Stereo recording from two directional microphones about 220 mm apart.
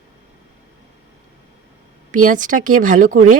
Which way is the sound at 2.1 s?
35° right (ahead or behind).